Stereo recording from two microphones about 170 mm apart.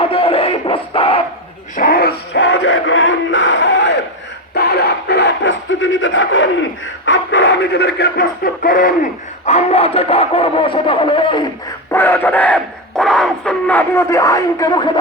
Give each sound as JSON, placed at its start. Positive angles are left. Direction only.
{"t": 0.0, "sound": "music", "side_deg": 35}
{"t": 1.7, "sound": "a sound", "side_deg": 60}
{"t": 4.5, "sound": "a sound", "side_deg": 70}
{"t": 7.0, "sound": "speech", "side_deg": 90}
{"t": 9.5, "sound": "speech", "side_deg": 40}
{"t": 11.9, "sound": "speech", "side_deg": 15}